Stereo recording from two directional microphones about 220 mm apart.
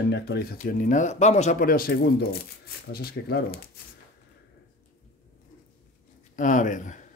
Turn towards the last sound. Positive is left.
turn(degrees=35)  # may be behind; listen again after turning